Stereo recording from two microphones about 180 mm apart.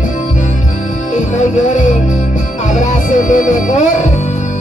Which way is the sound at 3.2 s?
45° left (ahead or behind).